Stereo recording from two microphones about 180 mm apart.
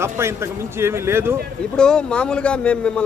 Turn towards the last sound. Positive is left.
turn(degrees=5)  # may be behind; listen again after turning